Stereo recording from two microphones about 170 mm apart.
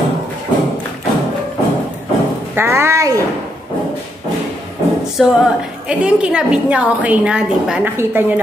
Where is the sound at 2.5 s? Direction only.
15° right (ahead or behind).